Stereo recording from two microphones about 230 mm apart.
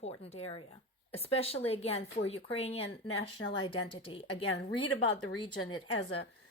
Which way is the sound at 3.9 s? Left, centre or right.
Left.